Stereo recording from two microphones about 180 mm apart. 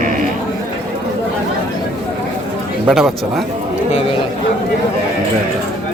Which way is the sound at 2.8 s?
Centre (ahead or behind).